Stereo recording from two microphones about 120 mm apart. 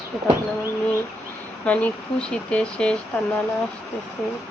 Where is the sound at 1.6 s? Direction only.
10° left (ahead or behind).